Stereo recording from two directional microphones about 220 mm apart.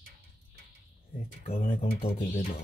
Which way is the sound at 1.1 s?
30° left (ahead or behind).